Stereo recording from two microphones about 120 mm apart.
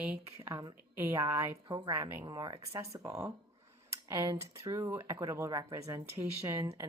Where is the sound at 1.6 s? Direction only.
35° right (ahead or behind).